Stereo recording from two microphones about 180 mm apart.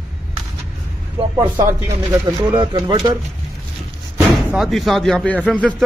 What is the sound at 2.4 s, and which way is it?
Speech, 25° right (ahead or behind).